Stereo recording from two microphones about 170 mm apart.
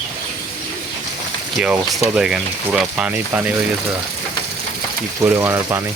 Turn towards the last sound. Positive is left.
turn(degrees=-15)  # may be behind; listen again after turning